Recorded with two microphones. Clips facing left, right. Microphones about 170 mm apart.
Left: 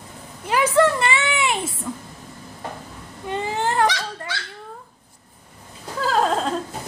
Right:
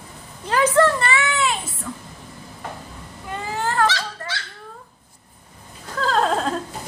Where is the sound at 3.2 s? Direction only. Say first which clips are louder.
Left 3 dB; 20° left (ahead or behind).